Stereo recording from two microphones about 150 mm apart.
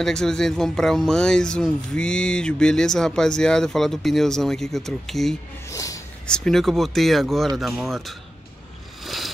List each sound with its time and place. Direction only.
0.0 s speech: 5° left (ahead or behind)
5.7 s snort: 20° left (ahead or behind)
6.2 s speech: 5° left (ahead or behind)
9.0 s a sound: centre (ahead or behind)